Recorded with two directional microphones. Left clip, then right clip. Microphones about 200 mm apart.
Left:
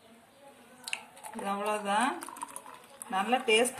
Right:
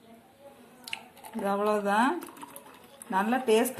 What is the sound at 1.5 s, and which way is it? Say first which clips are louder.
Speech: right 4 dB; 20° right (ahead or behind).